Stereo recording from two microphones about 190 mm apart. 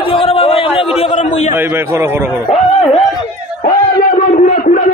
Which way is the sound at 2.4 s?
30° left (ahead or behind).